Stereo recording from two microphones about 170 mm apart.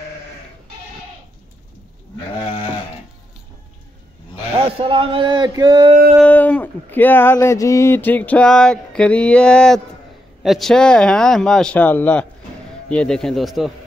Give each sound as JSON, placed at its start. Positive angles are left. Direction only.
{"t": 4.6, "sound": "speech", "side_deg": -30}
{"t": 6.2, "sound": "a sound", "side_deg": 10}
{"t": 10.4, "sound": "speech", "side_deg": 0}